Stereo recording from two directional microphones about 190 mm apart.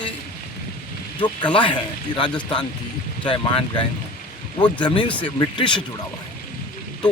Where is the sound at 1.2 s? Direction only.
25° left (ahead or behind).